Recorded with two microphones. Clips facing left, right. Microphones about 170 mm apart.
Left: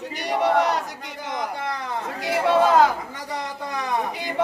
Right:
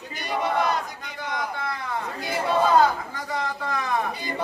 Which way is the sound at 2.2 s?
90° left.